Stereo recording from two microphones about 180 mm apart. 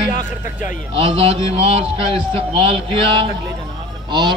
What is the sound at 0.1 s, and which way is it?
Speech, 45° left (ahead or behind).